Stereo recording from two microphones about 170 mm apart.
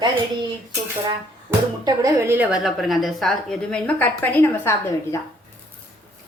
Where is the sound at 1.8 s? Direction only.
20° right (ahead or behind); by 5.1 s 15° left (ahead or behind).